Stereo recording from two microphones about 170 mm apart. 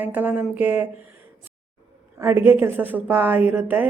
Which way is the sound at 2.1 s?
15° right (ahead or behind).